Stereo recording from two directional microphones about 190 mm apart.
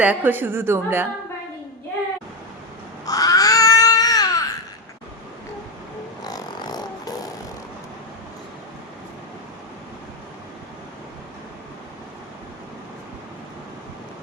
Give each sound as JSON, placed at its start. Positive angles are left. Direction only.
{"t": 0.0, "sound": "a woman's voice", "side_deg": -10}
{"t": 3.1, "sound": "baby cry", "side_deg": 20}
{"t": 6.2, "sound": "a sound", "side_deg": 20}